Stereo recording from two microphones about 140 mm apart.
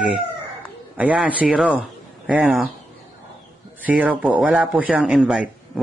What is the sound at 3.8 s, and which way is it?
Speech, 10° right (ahead or behind).